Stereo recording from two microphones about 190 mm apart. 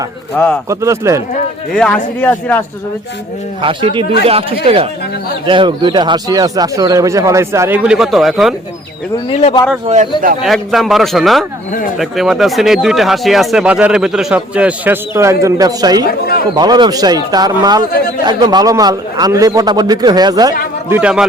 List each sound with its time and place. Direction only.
0.4 s speech: 10° left (ahead or behind)
0.7 s speech: 15° right (ahead or behind)
1.7 s speech: 5° left (ahead or behind)
3.6 s speech: 25° right (ahead or behind)
7.8 s speech: 5° right (ahead or behind)
9.1 s speech: 25° left (ahead or behind)
9.8 s speech: 35° right (ahead or behind)
10.4 s speech: centre (ahead or behind); by 16.0 s 20° right (ahead or behind)
16.0 s a sound: 55° left (ahead or behind)
16.6 s speech: 20° right (ahead or behind)
20.9 s speech: 5° right (ahead or behind)